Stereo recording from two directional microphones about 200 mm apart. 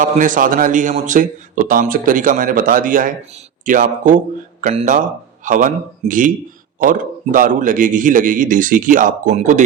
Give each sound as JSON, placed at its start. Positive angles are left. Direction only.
{"t": 0.0, "sound": "a man's voice", "side_deg": -40}